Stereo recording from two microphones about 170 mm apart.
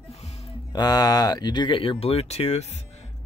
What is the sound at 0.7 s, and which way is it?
Speech, 25° left (ahead or behind).